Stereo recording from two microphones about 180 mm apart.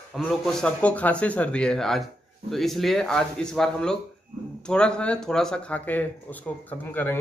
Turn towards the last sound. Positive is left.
turn(degrees=10)  # may be behind; listen again after turning